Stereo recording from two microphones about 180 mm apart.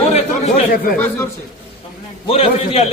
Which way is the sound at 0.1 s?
35° left (ahead or behind).